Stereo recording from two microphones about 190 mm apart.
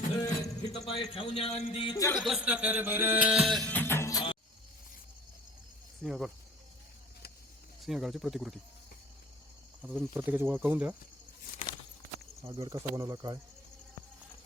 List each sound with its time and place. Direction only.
0.2 s music: 20° left (ahead or behind)
0.9 s speech: 30° left (ahead or behind)
2.1 s music: centre (ahead or behind); by 4.4 s 20° left (ahead or behind)
6.0 s speech: centre (ahead or behind)
7.8 s speech: centre (ahead or behind)
9.8 s speech: 10° right (ahead or behind)
12.5 s speech: 20° right (ahead or behind)